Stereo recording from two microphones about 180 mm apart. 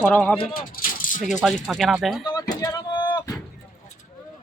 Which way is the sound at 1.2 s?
5° right (ahead or behind).